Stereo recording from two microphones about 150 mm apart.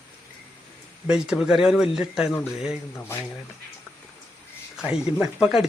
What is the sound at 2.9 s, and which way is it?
Speech, 15° left (ahead or behind).